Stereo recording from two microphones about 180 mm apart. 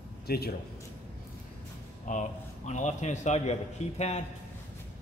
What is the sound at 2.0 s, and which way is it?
A man's voice, 45° left (ahead or behind).